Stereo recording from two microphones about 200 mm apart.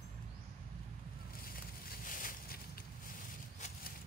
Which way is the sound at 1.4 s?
45° left (ahead or behind).